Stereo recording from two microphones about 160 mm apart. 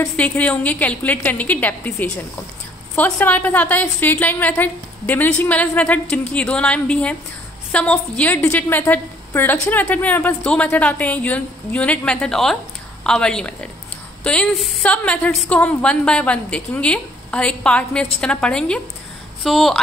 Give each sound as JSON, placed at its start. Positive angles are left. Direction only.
{"t": 0.1, "sound": "a woman's voice", "side_deg": 10}